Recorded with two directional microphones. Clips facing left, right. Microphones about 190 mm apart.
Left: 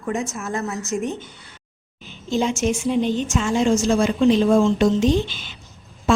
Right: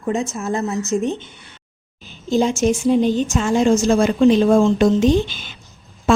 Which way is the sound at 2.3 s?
40° right (ahead or behind).